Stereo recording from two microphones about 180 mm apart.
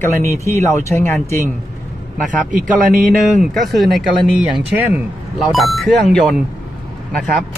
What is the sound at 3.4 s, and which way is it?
Speech, centre (ahead or behind).